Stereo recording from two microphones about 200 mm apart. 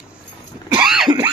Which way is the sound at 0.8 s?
Centre (ahead or behind).